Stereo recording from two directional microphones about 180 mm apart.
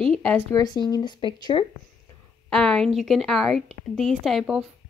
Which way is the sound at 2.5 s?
5° left (ahead or behind).